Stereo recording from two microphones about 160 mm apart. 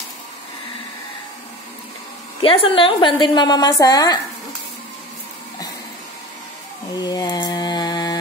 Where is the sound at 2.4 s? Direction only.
35° left (ahead or behind).